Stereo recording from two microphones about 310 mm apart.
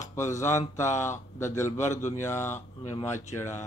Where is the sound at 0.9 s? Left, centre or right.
Left.